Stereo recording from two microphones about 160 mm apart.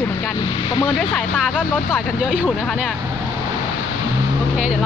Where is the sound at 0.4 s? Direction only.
30° left (ahead or behind).